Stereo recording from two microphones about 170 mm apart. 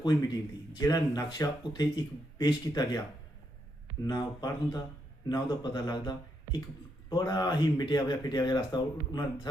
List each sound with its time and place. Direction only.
0.0 s speech: 20° left (ahead or behind)
4.0 s speech: 25° left (ahead or behind)